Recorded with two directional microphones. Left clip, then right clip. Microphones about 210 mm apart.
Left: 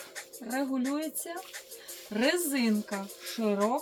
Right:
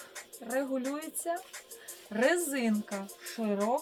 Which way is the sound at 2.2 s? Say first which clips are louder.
Even; 15° right (ahead or behind).